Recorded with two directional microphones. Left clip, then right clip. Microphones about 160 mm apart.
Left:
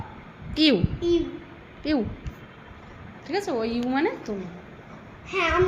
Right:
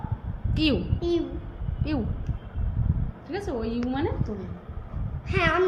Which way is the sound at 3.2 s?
25° left (ahead or behind).